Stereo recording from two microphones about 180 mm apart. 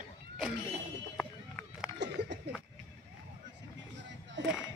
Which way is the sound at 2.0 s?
75° right (ahead or behind).